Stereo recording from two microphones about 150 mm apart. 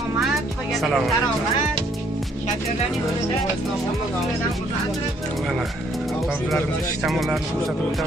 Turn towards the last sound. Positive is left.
turn(degrees=0)  # may be behind; listen again after turning